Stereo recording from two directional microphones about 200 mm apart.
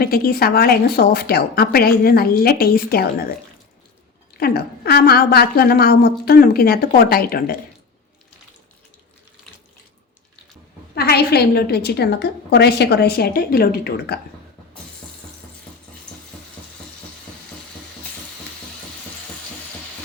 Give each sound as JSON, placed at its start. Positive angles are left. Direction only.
{"t": 0.0, "sound": "a woman's voice", "side_deg": 50}
{"t": 4.4, "sound": "a woman's voice", "side_deg": 50}
{"t": 10.9, "sound": "a woman's voice", "side_deg": 50}